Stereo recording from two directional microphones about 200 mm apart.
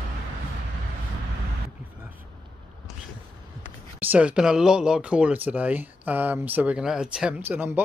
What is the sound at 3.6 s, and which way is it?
Speech, 10° right (ahead or behind).